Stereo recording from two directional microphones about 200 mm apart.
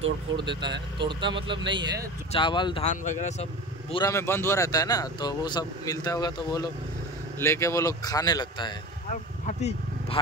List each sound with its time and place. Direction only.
0.4 s speech: 25° right (ahead or behind)
2.3 s speech: 25° left (ahead or behind)
3.9 s speech: 15° left (ahead or behind)
9.1 s vehicle: 35° left (ahead or behind)